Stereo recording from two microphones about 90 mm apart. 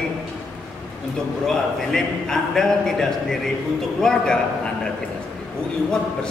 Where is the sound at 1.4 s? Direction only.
5° left (ahead or behind).